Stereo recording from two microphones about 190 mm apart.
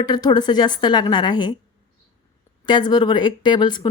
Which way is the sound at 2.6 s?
25° left (ahead or behind).